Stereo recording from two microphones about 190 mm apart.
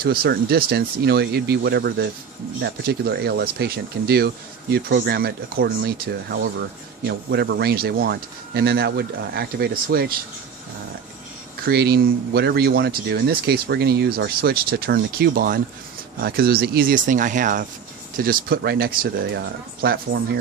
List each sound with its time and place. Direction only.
0.0 s speech: 55° right (ahead or behind)
11.6 s speech: 55° right (ahead or behind)